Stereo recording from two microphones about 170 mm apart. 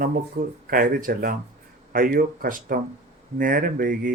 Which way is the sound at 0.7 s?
60° right (ahead or behind).